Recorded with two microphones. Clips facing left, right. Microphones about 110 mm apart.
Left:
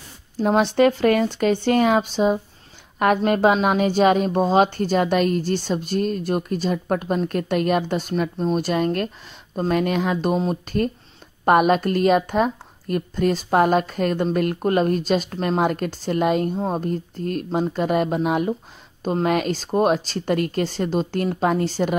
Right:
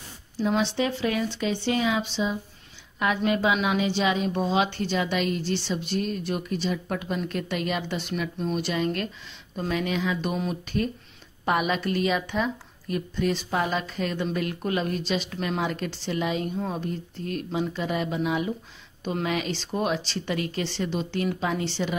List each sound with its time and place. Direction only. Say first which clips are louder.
0.4 s a woman's voice: left 8 dB; 50° left (ahead or behind)
8.1 s a woman's voice: left 6 dB; 35° left (ahead or behind)
10.3 s a woman's voice: left 6 dB; 35° left (ahead or behind)